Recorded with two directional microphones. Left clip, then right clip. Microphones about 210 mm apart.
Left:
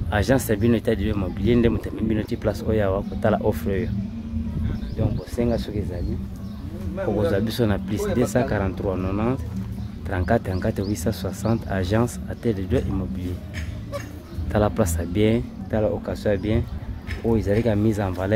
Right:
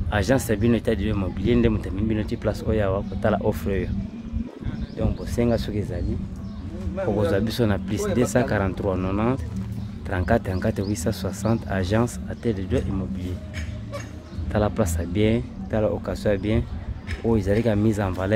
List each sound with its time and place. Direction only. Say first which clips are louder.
0.1 s speech: left 1 dB; 5° right (ahead or behind)
4.9 s speech: right 1 dB; 20° right (ahead or behind)
7.2 s speech: left 1 dB; 10° right (ahead or behind)
14.5 s speech: left 2 dB; 5° left (ahead or behind)